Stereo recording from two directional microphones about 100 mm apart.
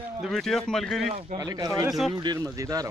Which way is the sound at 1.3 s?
40° right (ahead or behind).